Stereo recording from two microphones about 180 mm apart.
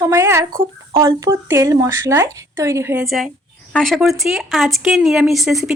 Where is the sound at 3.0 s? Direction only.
Centre (ahead or behind).